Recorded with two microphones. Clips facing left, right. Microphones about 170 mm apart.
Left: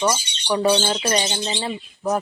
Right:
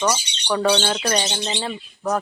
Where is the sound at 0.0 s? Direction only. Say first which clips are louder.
Even; 5° left (ahead or behind).